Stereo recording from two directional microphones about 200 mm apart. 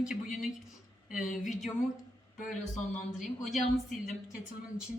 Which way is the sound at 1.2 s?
40° left (ahead or behind).